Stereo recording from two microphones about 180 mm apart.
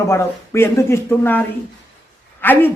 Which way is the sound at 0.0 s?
15° left (ahead or behind).